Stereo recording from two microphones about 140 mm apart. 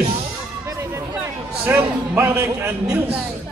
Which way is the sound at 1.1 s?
15° right (ahead or behind).